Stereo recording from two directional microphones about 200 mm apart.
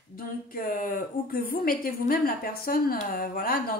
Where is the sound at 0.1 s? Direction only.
45° left (ahead or behind).